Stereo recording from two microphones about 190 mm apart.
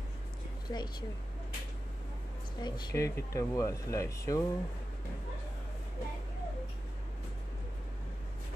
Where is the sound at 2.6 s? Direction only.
25° left (ahead or behind).